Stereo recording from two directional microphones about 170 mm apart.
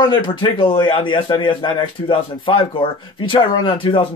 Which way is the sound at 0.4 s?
30° left (ahead or behind).